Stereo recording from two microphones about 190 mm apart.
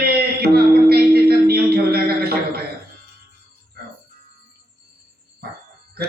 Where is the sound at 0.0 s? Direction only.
55° right (ahead or behind).